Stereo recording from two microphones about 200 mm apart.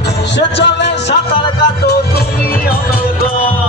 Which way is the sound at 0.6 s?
60° left (ahead or behind).